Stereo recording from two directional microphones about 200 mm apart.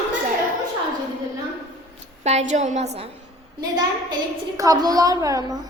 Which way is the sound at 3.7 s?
20° right (ahead or behind).